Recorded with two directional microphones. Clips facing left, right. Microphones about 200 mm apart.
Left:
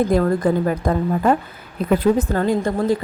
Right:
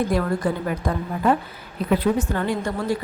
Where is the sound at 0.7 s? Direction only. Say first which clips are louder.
Left 6 dB; 45° left (ahead or behind).